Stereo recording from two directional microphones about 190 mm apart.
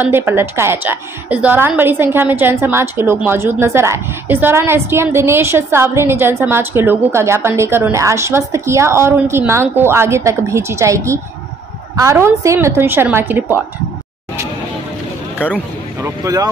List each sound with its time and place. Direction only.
0.0 s a woman's voice: 10° right (ahead or behind)
16.0 s a woman's voice: 15° right (ahead or behind)